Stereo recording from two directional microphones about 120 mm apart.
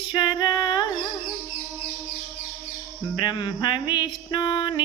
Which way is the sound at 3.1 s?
40° left (ahead or behind).